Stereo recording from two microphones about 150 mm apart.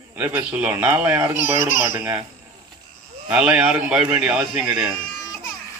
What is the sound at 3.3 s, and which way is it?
A man's voice, 5° right (ahead or behind).